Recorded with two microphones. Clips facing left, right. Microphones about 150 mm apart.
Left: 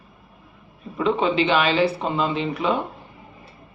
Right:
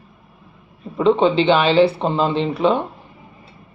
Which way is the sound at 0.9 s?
30° right (ahead or behind).